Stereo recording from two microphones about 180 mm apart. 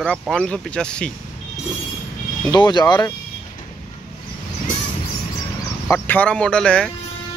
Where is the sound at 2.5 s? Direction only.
25° left (ahead or behind).